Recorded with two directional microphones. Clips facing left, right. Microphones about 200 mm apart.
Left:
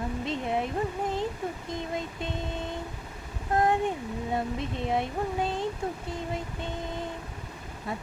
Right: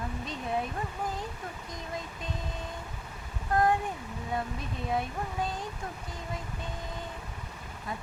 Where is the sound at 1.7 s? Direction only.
25° left (ahead or behind).